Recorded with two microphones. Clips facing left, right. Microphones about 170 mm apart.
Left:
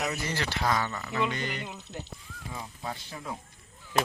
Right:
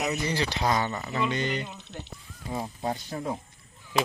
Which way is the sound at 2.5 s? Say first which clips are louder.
Right 8 dB; 35° right (ahead or behind).